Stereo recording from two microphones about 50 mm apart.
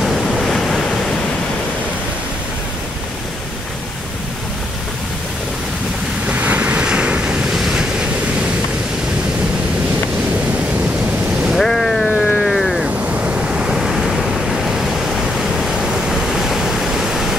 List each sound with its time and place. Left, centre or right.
0.0 s waves: centre
6.2 s waves: right
6.8 s waves: centre
7.5 s waves: centre
11.5 s boat: centre
12.4 s waves: centre
13.0 s waves: right
13.7 s waves: centre
15.6 s pink noise: centre